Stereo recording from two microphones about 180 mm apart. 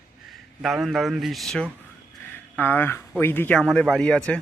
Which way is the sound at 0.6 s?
Centre (ahead or behind).